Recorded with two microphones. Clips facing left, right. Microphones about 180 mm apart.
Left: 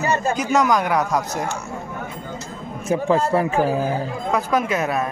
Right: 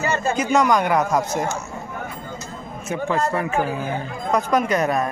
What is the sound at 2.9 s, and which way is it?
A man's voice, 30° left (ahead or behind).